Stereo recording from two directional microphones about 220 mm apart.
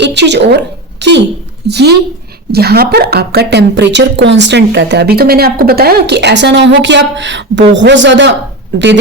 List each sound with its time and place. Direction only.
0.0 s a woman's voice: 50° right (ahead or behind)